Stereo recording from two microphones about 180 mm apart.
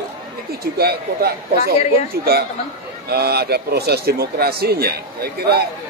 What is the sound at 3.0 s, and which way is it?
A man's voice, 60° right (ahead or behind).